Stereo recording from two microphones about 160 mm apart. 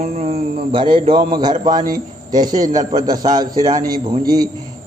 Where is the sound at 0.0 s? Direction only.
45° right (ahead or behind).